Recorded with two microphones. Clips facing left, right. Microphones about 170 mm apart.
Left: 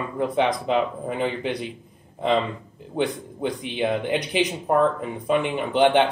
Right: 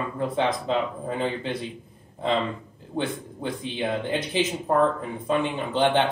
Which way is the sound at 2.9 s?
20° left (ahead or behind).